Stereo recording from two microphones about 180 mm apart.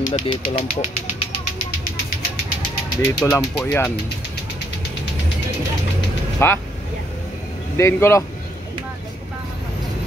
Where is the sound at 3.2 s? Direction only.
15° left (ahead or behind).